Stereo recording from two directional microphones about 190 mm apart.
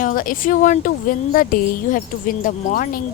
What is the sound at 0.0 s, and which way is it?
A woman's voice, 45° left (ahead or behind).